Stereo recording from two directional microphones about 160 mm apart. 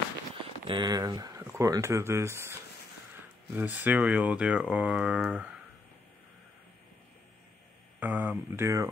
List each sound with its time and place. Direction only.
0.7 s speech: 30° right (ahead or behind); by 5.5 s 5° right (ahead or behind)
8.0 s speech: 10° right (ahead or behind)